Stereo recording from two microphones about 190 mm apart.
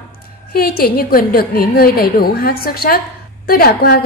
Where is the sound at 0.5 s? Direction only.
50° left (ahead or behind).